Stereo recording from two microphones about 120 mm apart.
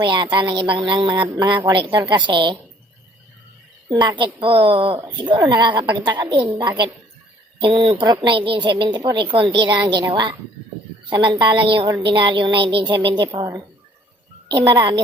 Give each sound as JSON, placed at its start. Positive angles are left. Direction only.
{"t": 0.0, "sound": "speech", "side_deg": -40}
{"t": 3.9, "sound": "speech", "side_deg": -40}
{"t": 4.9, "sound": "speech", "side_deg": -35}
{"t": 11.1, "sound": "speech", "side_deg": -40}
{"t": 14.5, "sound": "speech", "side_deg": -35}